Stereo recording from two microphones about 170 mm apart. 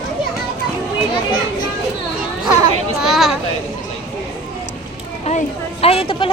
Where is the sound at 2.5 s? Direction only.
20° right (ahead or behind).